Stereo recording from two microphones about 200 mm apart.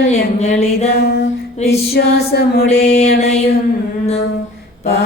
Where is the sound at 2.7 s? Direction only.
30° left (ahead or behind).